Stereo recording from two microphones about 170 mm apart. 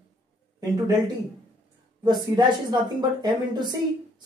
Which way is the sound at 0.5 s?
20° right (ahead or behind).